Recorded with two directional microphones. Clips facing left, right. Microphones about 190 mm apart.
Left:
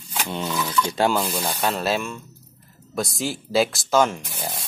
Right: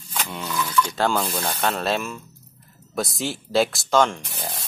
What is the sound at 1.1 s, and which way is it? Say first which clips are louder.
Speech: left 1 dB; 5° left (ahead or behind).